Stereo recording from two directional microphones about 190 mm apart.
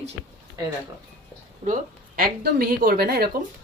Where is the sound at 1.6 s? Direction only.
45° right (ahead or behind).